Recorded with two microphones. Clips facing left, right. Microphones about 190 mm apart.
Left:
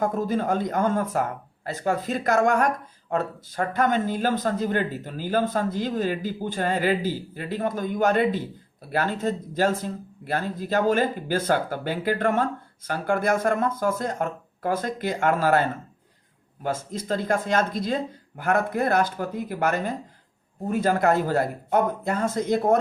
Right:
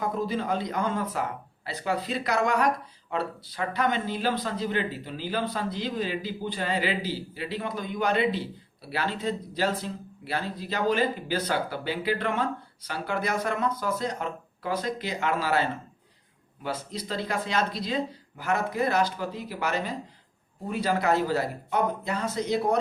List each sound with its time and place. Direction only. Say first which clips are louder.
0.0 s speech: left 4 dB; 50° left (ahead or behind)